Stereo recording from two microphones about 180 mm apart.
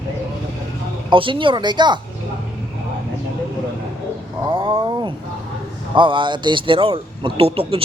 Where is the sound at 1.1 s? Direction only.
30° right (ahead or behind).